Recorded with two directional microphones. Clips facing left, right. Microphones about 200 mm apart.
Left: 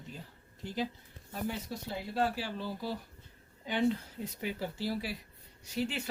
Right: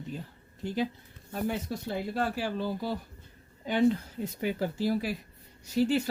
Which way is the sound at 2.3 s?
50° right (ahead or behind).